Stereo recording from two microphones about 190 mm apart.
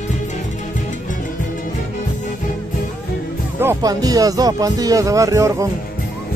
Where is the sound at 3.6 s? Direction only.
20° right (ahead or behind).